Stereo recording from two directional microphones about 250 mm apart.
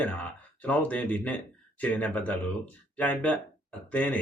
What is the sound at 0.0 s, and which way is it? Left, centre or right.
Speech, centre.